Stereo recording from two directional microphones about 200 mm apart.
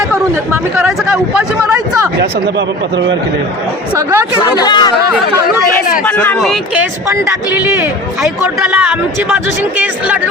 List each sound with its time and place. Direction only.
0.5 s speech: 10° right (ahead or behind)
3.9 s speech: 10° right (ahead or behind)
4.4 s speech: 25° left (ahead or behind)
6.1 s speech: 5° left (ahead or behind)
7.1 s speech: 10° right (ahead or behind)